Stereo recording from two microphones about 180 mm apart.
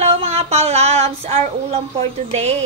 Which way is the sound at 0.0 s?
35° right (ahead or behind).